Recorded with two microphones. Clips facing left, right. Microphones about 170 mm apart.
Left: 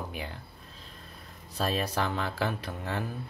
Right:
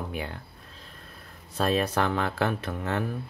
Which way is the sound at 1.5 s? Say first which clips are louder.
Right 5 dB; 55° right (ahead or behind).